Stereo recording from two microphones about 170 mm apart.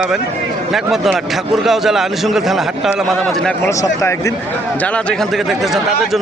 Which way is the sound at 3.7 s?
15° left (ahead or behind).